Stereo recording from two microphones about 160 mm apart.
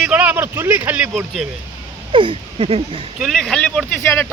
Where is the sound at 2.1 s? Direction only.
30° right (ahead or behind).